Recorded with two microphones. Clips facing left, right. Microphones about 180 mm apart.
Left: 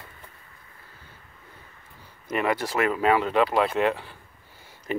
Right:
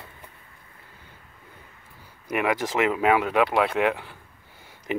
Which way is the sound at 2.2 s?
15° right (ahead or behind).